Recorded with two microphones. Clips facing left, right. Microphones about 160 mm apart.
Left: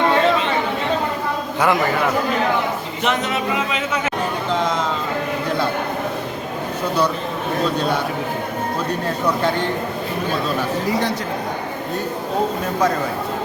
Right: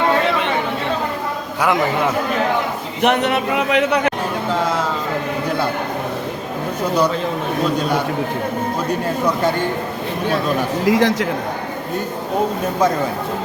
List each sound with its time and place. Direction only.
3.0 s a man's voice: 65° right (ahead or behind)
10.8 s a man's voice: 90° right